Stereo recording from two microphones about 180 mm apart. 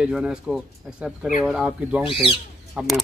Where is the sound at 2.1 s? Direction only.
30° left (ahead or behind).